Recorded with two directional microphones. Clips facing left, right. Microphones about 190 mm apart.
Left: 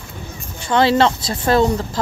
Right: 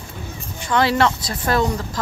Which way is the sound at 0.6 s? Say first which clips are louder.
Left 3 dB; 30° left (ahead or behind).